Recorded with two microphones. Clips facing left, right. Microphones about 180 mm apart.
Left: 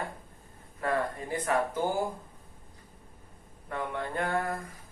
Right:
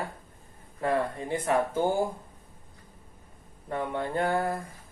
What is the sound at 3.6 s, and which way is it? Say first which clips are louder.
Speech: right 3 dB; 30° right (ahead or behind).